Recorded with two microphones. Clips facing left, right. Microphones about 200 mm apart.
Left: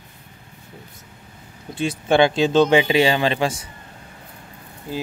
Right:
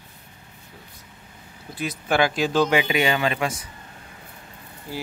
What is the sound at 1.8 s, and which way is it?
Speech, 25° left (ahead or behind).